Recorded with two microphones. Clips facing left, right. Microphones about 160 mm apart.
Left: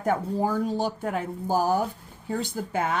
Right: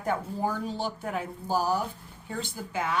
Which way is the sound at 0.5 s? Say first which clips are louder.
Left 6 dB; 45° left (ahead or behind).